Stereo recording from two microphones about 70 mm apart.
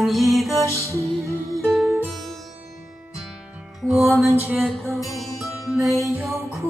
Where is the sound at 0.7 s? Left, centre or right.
Right.